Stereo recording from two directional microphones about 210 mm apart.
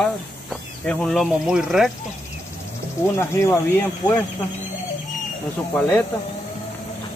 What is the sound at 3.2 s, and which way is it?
Speech, 10° left (ahead or behind).